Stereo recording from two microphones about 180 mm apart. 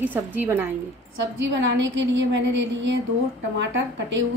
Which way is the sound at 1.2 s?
90° right.